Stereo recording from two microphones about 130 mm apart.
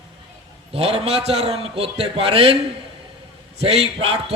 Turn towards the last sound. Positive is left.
turn(degrees=-50)  # may be behind; listen again after turning